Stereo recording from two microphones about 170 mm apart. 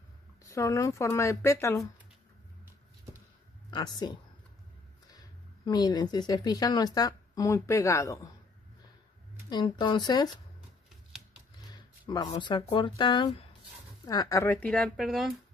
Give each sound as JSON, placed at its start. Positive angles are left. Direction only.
{"t": 0.4, "sound": "speech", "side_deg": 20}
{"t": 3.7, "sound": "a woman's voice", "side_deg": 25}
{"t": 5.7, "sound": "a woman's voice", "side_deg": 25}
{"t": 9.5, "sound": "a woman's voice", "side_deg": 25}
{"t": 11.7, "sound": "roaring cats", "side_deg": 25}
{"t": 12.3, "sound": "a woman's voice", "side_deg": 25}